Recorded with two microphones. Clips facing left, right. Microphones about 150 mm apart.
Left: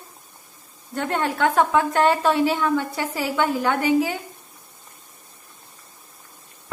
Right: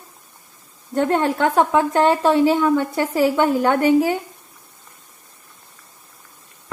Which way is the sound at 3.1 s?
45° right (ahead or behind).